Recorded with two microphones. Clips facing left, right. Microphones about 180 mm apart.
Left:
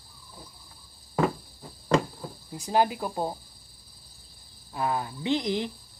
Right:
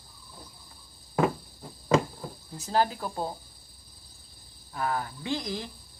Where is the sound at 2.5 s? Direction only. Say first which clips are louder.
Left 2 dB; 15° left (ahead or behind).